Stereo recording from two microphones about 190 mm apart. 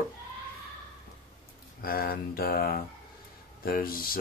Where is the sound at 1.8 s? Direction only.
50° left (ahead or behind).